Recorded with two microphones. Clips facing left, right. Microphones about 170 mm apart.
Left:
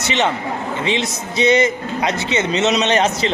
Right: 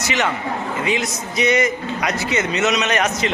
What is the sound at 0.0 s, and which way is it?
A man's voice, 25° left (ahead or behind).